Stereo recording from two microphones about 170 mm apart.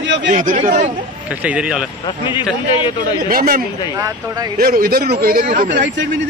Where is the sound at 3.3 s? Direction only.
60° right (ahead or behind).